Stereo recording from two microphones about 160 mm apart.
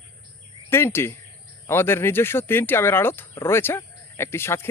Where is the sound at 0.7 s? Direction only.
15° left (ahead or behind).